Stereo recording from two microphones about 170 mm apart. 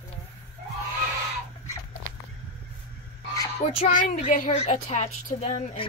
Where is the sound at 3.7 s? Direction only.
50° left (ahead or behind).